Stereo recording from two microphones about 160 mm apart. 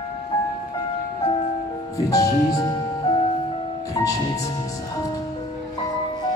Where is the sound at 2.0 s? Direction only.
20° left (ahead or behind).